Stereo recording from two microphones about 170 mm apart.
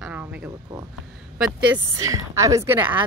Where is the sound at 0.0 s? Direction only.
5° right (ahead or behind).